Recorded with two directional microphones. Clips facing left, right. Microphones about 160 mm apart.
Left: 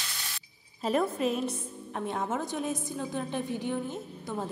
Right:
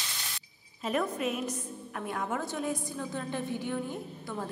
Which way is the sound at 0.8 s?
30° left (ahead or behind).